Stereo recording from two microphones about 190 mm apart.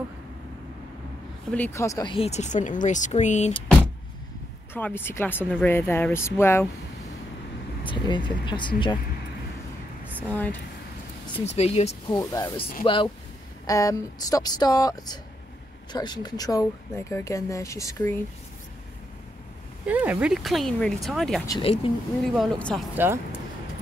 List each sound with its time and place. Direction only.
1.5 s speech: 10° left (ahead or behind)
2.1 s speech: 35° left (ahead or behind)
4.7 s speech: 10° left (ahead or behind)
7.8 s speech: 25° left (ahead or behind)
11.4 s speech: 35° left (ahead or behind)
12.1 s speech: 20° left (ahead or behind)
19.9 s speech: 10° right (ahead or behind)
21.5 s speech: 25° left (ahead or behind)
22.2 s speech: centre (ahead or behind)
23.0 s speech: 10° right (ahead or behind)